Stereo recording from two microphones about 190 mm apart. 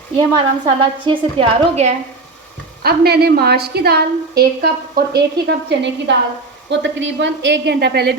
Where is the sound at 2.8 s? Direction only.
55° right (ahead or behind).